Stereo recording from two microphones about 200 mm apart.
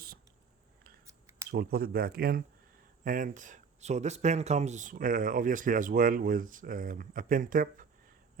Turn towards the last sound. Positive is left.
turn(degrees=-40)  # may be behind; listen again after turning